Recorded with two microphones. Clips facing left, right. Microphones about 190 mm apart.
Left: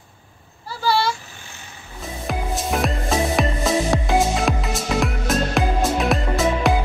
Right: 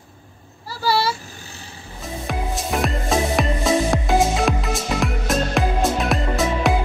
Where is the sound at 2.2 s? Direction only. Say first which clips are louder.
Left 2 dB; centre (ahead or behind).